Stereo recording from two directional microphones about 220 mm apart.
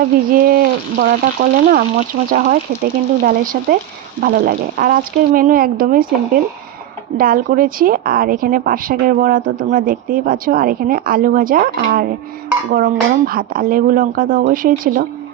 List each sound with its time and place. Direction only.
0.4 s a woman's voice: 40° right (ahead or behind)